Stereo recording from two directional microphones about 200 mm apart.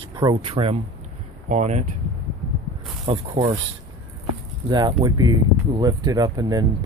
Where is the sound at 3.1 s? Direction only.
25° right (ahead or behind).